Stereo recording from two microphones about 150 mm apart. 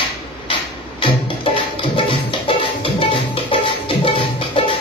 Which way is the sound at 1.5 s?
35° left (ahead or behind).